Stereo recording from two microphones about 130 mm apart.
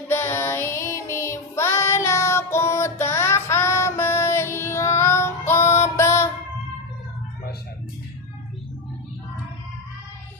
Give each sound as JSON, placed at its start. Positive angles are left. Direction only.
{"t": 0.1, "sound": "child singing", "side_deg": 20}
{"t": 6.0, "sound": "music", "side_deg": 20}